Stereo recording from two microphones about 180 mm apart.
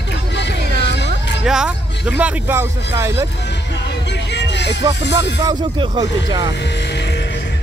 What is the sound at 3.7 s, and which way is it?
Music, 75° left (ahead or behind).